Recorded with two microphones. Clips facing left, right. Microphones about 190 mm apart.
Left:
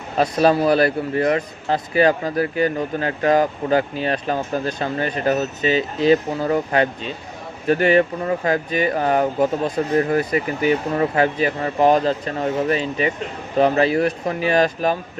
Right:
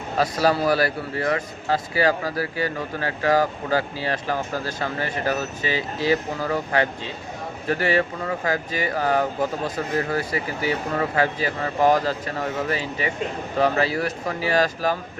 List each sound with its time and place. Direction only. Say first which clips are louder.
0.2 s speech: left 4 dB; 20° left (ahead or behind)